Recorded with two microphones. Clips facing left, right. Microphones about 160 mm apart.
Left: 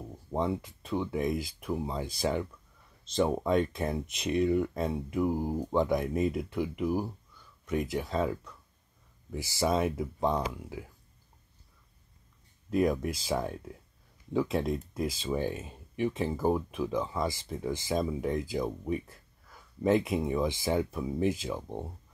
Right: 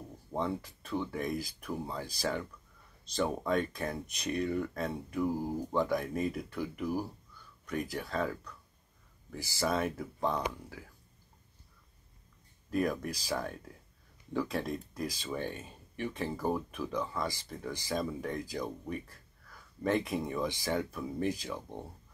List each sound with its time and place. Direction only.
0.3 s speech: 20° left (ahead or behind)
12.8 s speech: 20° left (ahead or behind)
15.3 s speech: 5° left (ahead or behind)
16.0 s speech: 20° left (ahead or behind)